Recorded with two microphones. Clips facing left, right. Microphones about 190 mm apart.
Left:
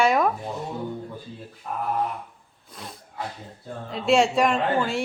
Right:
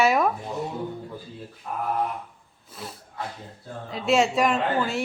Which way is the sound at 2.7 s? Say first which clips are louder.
Even; 5° right (ahead or behind).